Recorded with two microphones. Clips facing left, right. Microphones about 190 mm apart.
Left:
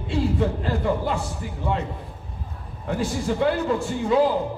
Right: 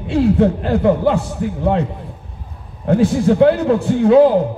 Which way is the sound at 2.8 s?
65° right (ahead or behind).